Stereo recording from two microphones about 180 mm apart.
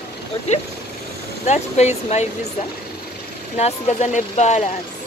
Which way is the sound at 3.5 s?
35° left (ahead or behind).